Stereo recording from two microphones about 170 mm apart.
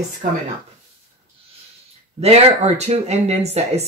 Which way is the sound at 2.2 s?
35° right (ahead or behind).